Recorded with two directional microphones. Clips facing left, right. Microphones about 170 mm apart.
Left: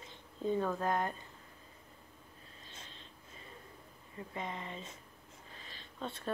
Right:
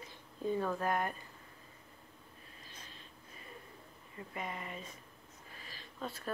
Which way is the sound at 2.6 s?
25° left (ahead or behind).